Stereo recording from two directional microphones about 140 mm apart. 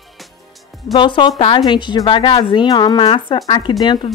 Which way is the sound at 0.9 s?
35° left (ahead or behind).